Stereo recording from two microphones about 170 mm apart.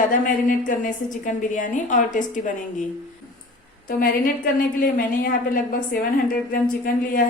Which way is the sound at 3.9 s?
55° left (ahead or behind).